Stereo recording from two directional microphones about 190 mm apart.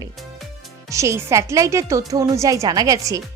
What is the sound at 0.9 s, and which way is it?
Speech, 15° right (ahead or behind).